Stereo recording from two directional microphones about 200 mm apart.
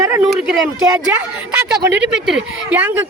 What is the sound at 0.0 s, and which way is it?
Speech, 10° right (ahead or behind).